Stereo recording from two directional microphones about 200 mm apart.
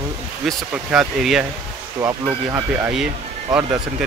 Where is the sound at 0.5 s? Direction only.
Centre (ahead or behind).